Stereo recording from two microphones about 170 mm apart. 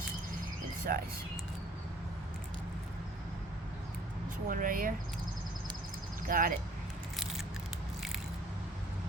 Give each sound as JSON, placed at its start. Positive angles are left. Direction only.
{"t": 0.9, "sound": "speech", "side_deg": -55}
{"t": 4.4, "sound": "speech", "side_deg": -55}
{"t": 6.2, "sound": "speech", "side_deg": -55}